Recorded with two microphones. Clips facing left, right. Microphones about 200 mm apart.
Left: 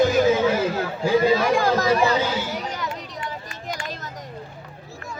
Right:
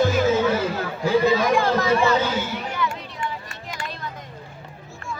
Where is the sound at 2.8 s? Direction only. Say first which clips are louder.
Right 4 dB; 40° left (ahead or behind).